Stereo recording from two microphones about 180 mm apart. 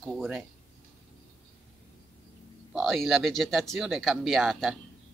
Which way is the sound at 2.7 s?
Centre (ahead or behind).